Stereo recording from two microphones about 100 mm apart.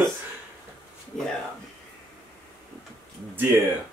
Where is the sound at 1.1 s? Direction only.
5° left (ahead or behind).